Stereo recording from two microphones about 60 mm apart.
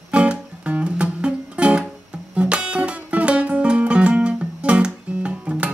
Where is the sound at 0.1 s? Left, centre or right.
Right.